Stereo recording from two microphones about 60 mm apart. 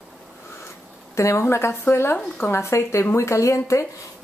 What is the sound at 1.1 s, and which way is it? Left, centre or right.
A woman's voice, left.